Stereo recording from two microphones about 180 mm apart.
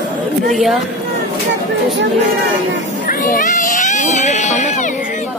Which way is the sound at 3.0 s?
50° left (ahead or behind).